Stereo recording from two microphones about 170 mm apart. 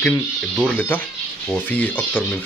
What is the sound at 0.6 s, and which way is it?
Speech, 10° left (ahead or behind).